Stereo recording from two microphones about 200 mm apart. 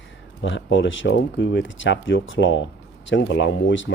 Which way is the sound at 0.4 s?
70° left (ahead or behind).